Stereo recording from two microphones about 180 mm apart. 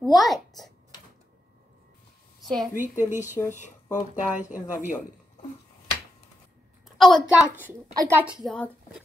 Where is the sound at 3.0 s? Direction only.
10° right (ahead or behind).